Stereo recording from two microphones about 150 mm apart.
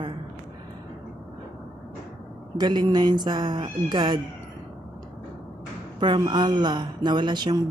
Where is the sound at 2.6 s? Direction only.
30° right (ahead or behind).